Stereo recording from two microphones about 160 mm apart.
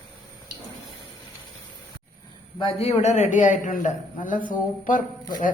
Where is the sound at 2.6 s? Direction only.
40° left (ahead or behind).